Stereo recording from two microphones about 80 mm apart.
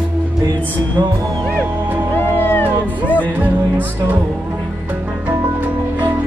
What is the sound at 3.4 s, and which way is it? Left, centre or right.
Music, right.